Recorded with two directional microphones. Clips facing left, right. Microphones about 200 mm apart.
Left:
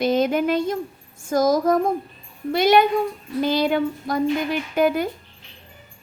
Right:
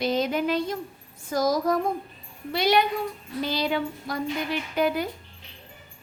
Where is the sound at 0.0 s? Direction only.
50° left (ahead or behind).